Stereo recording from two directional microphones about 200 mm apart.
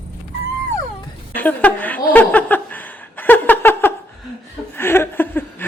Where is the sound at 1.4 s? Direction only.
10° left (ahead or behind).